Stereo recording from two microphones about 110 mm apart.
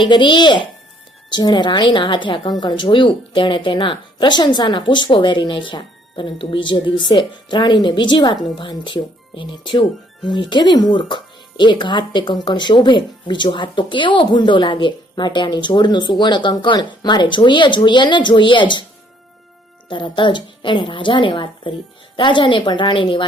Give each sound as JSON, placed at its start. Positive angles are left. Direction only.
{"t": 0.0, "sound": "speech", "side_deg": 45}
{"t": 19.9, "sound": "speech", "side_deg": 45}